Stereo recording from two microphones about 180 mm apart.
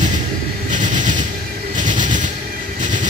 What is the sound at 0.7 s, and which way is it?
Train, 45° right (ahead or behind).